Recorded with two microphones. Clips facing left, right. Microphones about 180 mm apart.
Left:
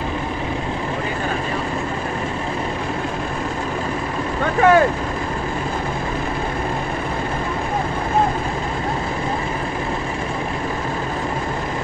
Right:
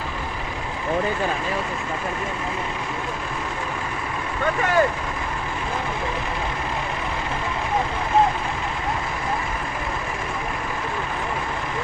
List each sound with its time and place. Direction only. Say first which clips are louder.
4.6 s vehicle: left 8 dB; 70° left (ahead or behind)